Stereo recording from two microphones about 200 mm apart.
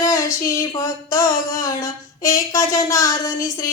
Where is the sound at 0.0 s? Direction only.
15° left (ahead or behind).